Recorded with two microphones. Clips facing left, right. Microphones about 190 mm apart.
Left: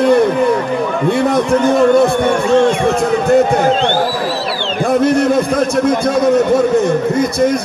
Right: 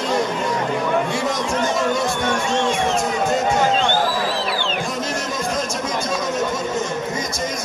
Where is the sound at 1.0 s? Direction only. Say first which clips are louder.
Left 10 dB; 60° left (ahead or behind).